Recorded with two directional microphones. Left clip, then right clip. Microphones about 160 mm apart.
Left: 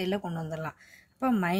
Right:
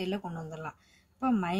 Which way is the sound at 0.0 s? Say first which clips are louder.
Left 4 dB; 30° left (ahead or behind).